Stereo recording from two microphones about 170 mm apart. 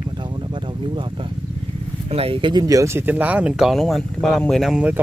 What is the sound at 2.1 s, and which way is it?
Speech, 35° right (ahead or behind).